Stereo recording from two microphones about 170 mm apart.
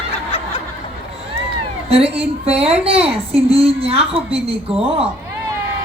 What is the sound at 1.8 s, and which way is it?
A woman's voice, 35° right (ahead or behind).